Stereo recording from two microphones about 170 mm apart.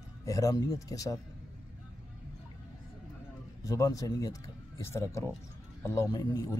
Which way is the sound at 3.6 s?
20° left (ahead or behind).